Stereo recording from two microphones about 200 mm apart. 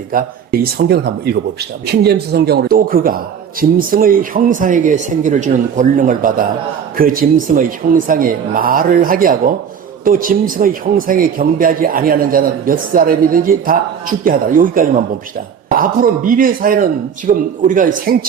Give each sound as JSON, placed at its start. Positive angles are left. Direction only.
{"t": 0.1, "sound": "a man's voice", "side_deg": -45}